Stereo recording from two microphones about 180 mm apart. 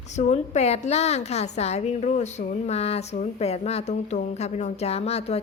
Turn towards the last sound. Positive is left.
turn(degrees=35)  # may be behind; listen again after turning